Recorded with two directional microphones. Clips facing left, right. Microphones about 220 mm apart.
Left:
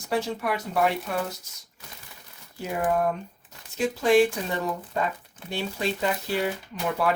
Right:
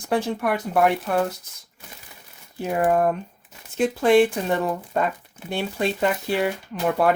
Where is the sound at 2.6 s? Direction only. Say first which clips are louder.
Right 5 dB; 60° right (ahead or behind).